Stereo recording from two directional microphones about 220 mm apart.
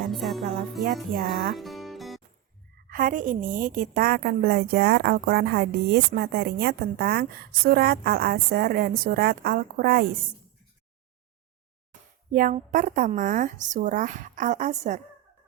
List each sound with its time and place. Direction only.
0.1 s music: centre (ahead or behind)
1.5 s music: centre (ahead or behind)
2.9 s a woman's voice: 40° right (ahead or behind)
12.3 s speech: 40° right (ahead or behind)